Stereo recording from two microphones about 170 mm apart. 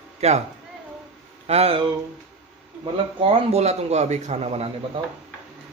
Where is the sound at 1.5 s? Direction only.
35° right (ahead or behind).